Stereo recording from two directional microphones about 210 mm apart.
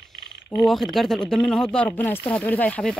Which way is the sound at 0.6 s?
Centre (ahead or behind).